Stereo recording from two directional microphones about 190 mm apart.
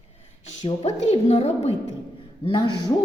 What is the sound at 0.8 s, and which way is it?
Speech, 35° left (ahead or behind).